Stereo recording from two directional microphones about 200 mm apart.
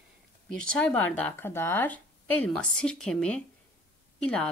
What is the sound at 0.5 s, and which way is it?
A woman's voice, 5° left (ahead or behind).